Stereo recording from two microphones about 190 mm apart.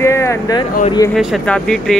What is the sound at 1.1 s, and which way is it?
Speech, centre (ahead or behind).